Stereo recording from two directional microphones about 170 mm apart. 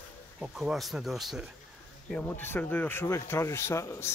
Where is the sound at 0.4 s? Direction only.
5° right (ahead or behind).